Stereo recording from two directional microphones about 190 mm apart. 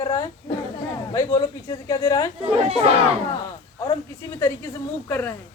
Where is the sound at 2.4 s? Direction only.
30° right (ahead or behind).